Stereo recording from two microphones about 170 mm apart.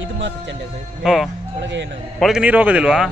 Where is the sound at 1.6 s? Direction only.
90° right.